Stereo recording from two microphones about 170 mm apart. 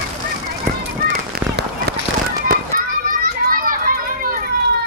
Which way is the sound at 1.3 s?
75° right (ahead or behind).